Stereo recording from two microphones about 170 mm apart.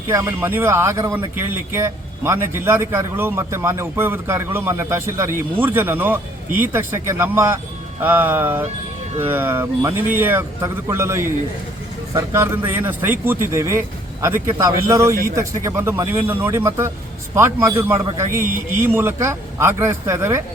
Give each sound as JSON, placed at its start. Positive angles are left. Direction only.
{"t": 0.1, "sound": "speech", "side_deg": -20}